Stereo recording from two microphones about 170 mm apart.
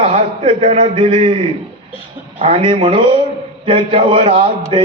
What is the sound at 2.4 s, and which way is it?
A man's voice, 35° right (ahead or behind).